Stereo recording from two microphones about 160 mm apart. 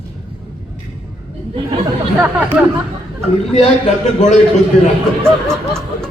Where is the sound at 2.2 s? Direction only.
10° right (ahead or behind).